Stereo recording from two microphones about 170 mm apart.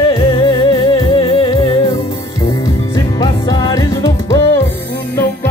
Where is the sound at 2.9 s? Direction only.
25° left (ahead or behind).